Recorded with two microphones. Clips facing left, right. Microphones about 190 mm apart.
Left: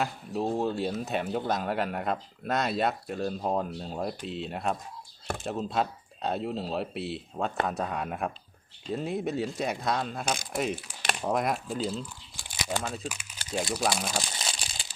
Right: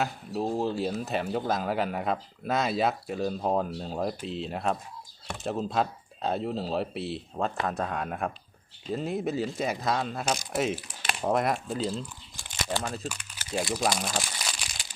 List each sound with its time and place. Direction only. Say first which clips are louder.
0.0 s speech: even; centre (ahead or behind)
14.3 s crumpling: left 1 dB; 25° left (ahead or behind)